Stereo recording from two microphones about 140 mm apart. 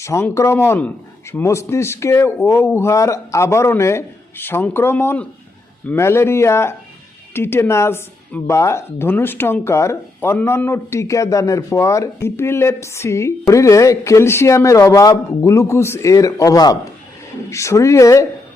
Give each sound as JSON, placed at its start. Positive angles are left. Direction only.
{"t": 0.0, "sound": "speech", "side_deg": 20}